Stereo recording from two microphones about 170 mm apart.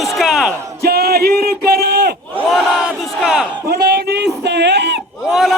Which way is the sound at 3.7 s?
70° right (ahead or behind).